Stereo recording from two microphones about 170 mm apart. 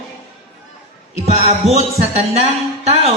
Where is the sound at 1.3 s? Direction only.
40° right (ahead or behind).